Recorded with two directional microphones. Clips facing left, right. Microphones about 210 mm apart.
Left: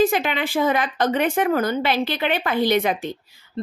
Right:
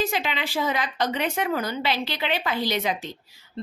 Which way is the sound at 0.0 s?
50° left (ahead or behind).